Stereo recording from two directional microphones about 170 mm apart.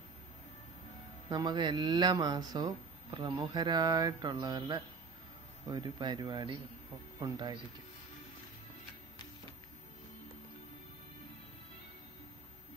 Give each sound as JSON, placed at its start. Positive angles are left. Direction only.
{"t": 1.3, "sound": "speech", "side_deg": -25}